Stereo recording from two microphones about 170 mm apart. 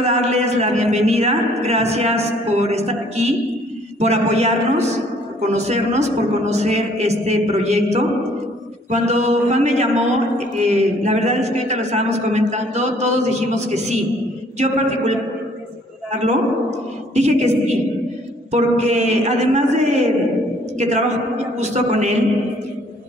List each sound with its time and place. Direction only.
0.0 s a man's voice: 40° right (ahead or behind)
16.1 s a man's voice: 40° right (ahead or behind)